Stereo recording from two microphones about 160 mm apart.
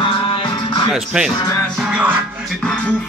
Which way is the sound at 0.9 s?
5° right (ahead or behind).